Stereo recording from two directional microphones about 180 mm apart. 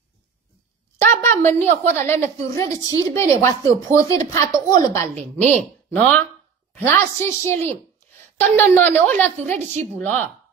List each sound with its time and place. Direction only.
0.9 s a woman's voice: 15° left (ahead or behind)
5.5 s a woman's voice: 5° left (ahead or behind)